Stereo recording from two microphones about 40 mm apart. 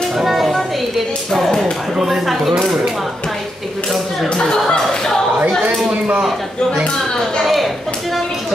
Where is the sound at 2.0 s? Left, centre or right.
Centre.